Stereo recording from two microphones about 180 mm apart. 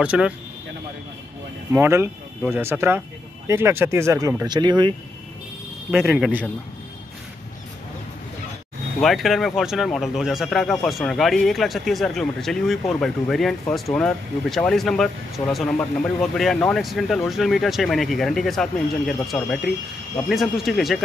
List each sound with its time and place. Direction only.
0.0 s speech: 5° right (ahead or behind)
1.7 s speech: 15° right (ahead or behind)
5.9 s speech: 5° right (ahead or behind)
9.0 s speech: centre (ahead or behind)